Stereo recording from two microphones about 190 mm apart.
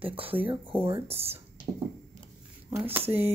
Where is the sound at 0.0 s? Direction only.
30° right (ahead or behind).